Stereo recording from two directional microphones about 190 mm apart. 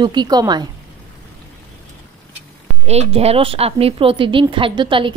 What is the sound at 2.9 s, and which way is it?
A woman's voice, 35° right (ahead or behind).